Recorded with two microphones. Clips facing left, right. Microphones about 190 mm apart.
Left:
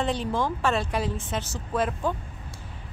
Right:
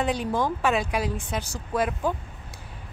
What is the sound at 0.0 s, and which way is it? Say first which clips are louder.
A woman's voice: right 1 dB; 10° right (ahead or behind).